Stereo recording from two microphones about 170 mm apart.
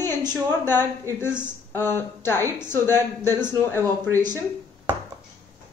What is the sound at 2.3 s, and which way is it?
Speech, 15° right (ahead or behind).